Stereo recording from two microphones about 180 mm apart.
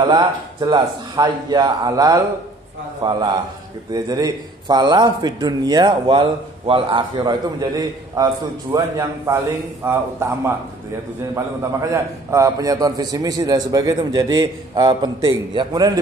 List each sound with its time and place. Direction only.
0.0 s a man's voice: 25° right (ahead or behind)